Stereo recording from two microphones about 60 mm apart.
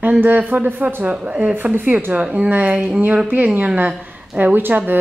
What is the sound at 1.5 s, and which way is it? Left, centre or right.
A woman's voice, right.